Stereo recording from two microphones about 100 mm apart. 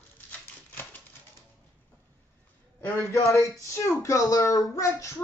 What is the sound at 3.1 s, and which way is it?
Speech, 30° left (ahead or behind).